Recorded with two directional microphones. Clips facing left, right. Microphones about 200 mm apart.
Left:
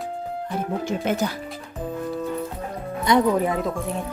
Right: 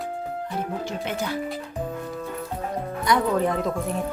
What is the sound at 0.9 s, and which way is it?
Speech, 45° left (ahead or behind).